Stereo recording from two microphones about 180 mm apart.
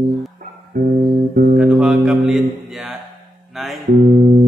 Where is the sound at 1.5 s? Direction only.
5° right (ahead or behind).